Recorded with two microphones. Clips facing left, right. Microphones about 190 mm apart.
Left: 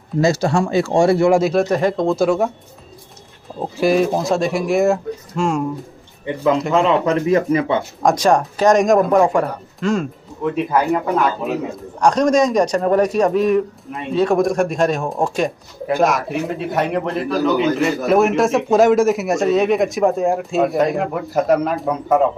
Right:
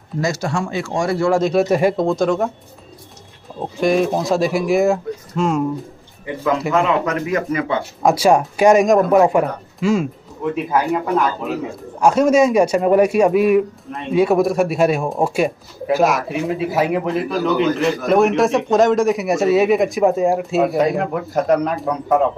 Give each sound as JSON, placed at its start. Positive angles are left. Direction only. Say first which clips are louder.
{"t": 0.2, "sound": "a man's voice", "louder": "left 5 dB", "side_deg": 30}
{"t": 1.4, "sound": "a man's voice", "louder": "right 1 dB", "side_deg": 0}
{"t": 2.0, "sound": "a man's voice", "louder": "left 1 dB", "side_deg": 5}
{"t": 3.5, "sound": "a man's voice", "louder": "left 1 dB", "side_deg": 5}
{"t": 6.7, "sound": "a man's voice", "louder": "left 2 dB", "side_deg": 25}
{"t": 8.0, "sound": "a man's voice", "louder": "right 2 dB", "side_deg": -5}
{"t": 12.0, "sound": "a man's voice", "louder": "right 1 dB", "side_deg": -5}